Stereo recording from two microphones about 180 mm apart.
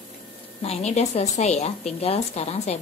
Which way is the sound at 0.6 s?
35° left (ahead or behind).